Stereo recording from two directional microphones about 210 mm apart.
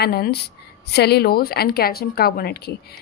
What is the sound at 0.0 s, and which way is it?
Speech, 50° left (ahead or behind).